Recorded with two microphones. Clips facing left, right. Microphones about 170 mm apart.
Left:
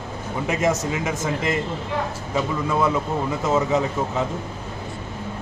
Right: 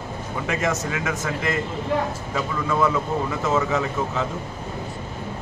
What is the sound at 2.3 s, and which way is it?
Speech, 20° left (ahead or behind).